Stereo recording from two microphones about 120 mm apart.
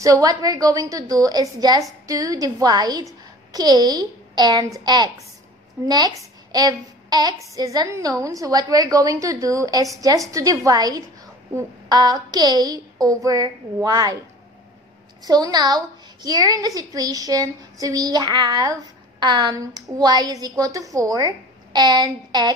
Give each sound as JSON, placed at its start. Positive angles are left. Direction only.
{"t": 0.0, "sound": "a woman's voice", "side_deg": -30}
{"t": 15.2, "sound": "a woman's voice", "side_deg": -35}